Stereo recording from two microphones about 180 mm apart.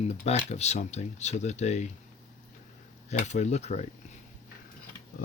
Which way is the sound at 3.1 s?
40° left (ahead or behind).